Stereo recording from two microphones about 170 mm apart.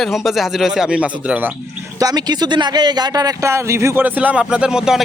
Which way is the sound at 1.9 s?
20° right (ahead or behind).